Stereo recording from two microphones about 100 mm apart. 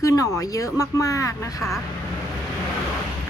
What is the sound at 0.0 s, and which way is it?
A woman's voice, 35° left (ahead or behind).